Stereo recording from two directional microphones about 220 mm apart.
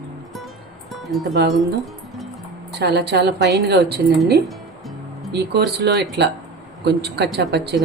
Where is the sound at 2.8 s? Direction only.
50° right (ahead or behind).